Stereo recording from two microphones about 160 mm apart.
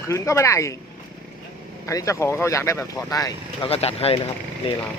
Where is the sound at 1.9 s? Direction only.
20° left (ahead or behind).